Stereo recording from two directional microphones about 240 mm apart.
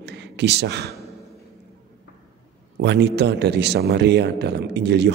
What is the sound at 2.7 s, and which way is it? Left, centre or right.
A man's voice, right.